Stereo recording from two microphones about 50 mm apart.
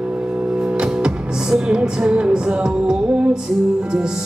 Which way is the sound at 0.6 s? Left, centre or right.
Centre.